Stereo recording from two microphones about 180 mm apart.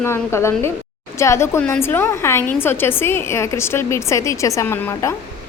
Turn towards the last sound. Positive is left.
turn(degrees=15)  # may be behind; listen again after turning